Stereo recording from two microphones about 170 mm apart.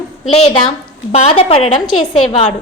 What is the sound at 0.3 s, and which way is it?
A woman's voice, 40° left (ahead or behind).